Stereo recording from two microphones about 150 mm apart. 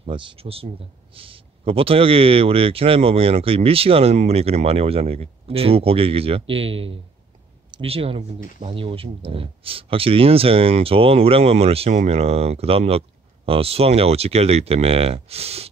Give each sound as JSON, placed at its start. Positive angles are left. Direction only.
{"t": 0.0, "sound": "speech", "side_deg": -35}